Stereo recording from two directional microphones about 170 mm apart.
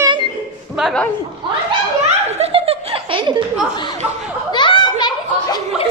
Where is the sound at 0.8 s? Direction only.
5° left (ahead or behind).